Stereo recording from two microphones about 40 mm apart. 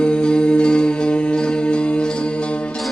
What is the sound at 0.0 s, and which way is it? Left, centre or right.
Music, left.